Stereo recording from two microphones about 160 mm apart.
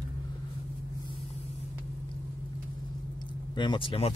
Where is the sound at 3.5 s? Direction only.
30° left (ahead or behind).